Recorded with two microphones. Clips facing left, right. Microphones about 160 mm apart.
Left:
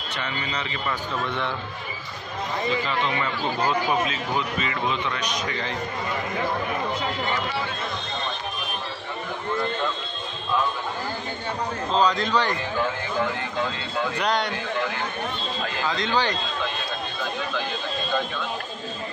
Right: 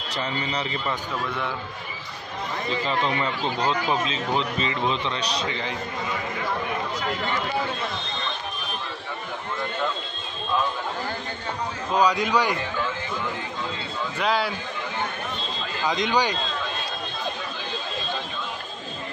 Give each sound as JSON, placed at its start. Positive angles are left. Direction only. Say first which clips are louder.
{"t": 0.1, "sound": "speech", "louder": "right 3 dB", "side_deg": -30}
{"t": 2.9, "sound": "speech", "louder": "right 1 dB", "side_deg": -35}
{"t": 5.5, "sound": "a man's voice", "louder": "even", "side_deg": -20}
{"t": 11.9, "sound": "a man's voice", "louder": "right 1 dB", "side_deg": -10}
{"t": 14.1, "sound": "speech", "louder": "right 2 dB", "side_deg": -5}
{"t": 15.8, "sound": "a man's voice", "louder": "right 2 dB", "side_deg": -15}